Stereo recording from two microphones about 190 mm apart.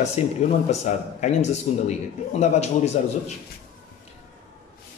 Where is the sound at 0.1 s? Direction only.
35° left (ahead or behind).